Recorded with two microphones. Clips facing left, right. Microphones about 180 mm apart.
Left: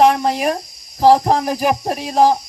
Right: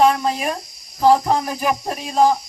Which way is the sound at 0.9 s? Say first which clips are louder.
Left 3 dB; 35° left (ahead or behind).